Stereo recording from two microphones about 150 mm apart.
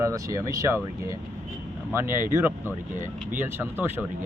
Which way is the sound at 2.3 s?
15° right (ahead or behind).